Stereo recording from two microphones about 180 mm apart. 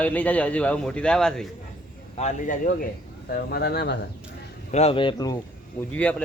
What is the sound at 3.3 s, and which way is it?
Speech, 60° left (ahead or behind).